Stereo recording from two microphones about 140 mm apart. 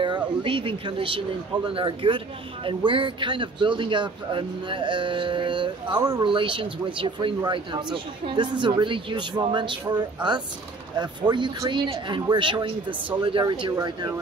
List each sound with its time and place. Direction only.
0.0 s speech: 35° right (ahead or behind)